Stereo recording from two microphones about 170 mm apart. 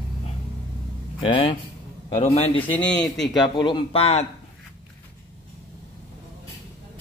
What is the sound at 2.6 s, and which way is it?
Speech, 10° left (ahead or behind).